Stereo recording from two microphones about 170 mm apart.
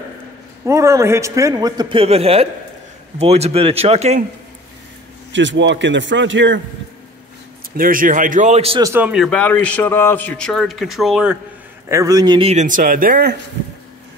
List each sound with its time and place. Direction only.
0.7 s a man's voice: 15° right (ahead or behind); by 4.2 s 40° right (ahead or behind)
5.3 s a man's voice: 90° right
7.7 s a man's voice: 55° right (ahead or behind); by 8.8 s 35° right (ahead or behind)
8.8 s speech: 10° right (ahead or behind)
9.1 s a man's voice: 5° left (ahead or behind)
11.9 s a man's voice: 20° right (ahead or behind)
12.6 s speech: 50° right (ahead or behind)